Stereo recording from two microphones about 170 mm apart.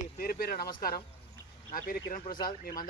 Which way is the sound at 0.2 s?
60° left (ahead or behind).